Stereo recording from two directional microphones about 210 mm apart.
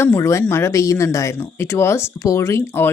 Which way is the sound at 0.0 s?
15° left (ahead or behind).